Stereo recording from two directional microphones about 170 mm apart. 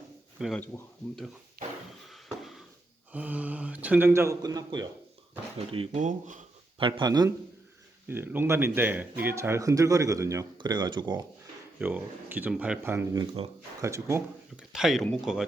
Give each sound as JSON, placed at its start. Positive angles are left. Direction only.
{"t": 0.3, "sound": "speech", "side_deg": 0}
{"t": 2.0, "sound": "a sound", "side_deg": 0}
{"t": 3.1, "sound": "speech", "side_deg": -10}
{"t": 5.5, "sound": "speech", "side_deg": -35}
{"t": 6.0, "sound": "speech", "side_deg": -50}
{"t": 6.7, "sound": "speech", "side_deg": -30}
{"t": 8.0, "sound": "speech", "side_deg": -15}
{"t": 11.8, "sound": "speech", "side_deg": -10}
{"t": 13.1, "sound": "speech", "side_deg": -35}
{"t": 13.8, "sound": "speech", "side_deg": -15}
{"t": 14.5, "sound": "speech", "side_deg": -5}